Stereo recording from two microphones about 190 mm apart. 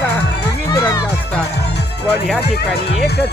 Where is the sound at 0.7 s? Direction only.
20° left (ahead or behind).